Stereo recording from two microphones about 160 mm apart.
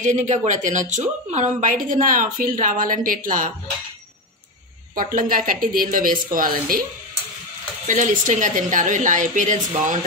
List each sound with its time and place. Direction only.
0.0 s a woman's voice: 50° right (ahead or behind)
4.9 s a woman's voice: 60° right (ahead or behind)
7.8 s a woman's voice: 55° right (ahead or behind)